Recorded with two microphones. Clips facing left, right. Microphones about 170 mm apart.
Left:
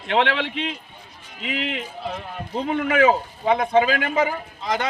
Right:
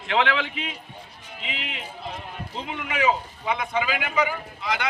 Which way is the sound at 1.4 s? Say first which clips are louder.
Left 8 dB; 50° left (ahead or behind).